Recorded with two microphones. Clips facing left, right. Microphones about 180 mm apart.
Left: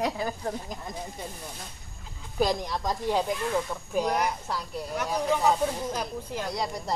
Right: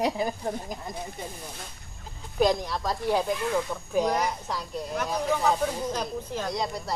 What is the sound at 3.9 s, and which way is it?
Speech, 10° left (ahead or behind).